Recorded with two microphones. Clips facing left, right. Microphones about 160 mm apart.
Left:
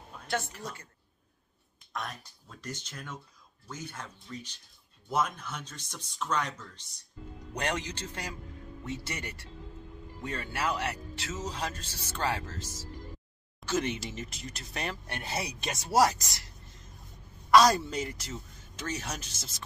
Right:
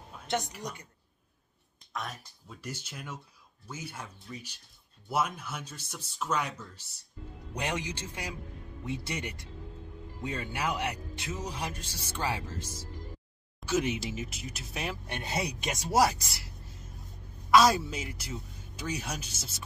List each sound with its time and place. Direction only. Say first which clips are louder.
0.3 s speech: right 1 dB; 15° right (ahead or behind)
2.0 s speech: even; centre (ahead or behind)
15.0 s speech: right 2 dB; 15° right (ahead or behind)
17.5 s speech: left 1 dB; 5° right (ahead or behind)